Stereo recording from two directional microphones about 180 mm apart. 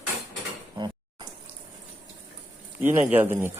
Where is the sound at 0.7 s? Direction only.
25° right (ahead or behind).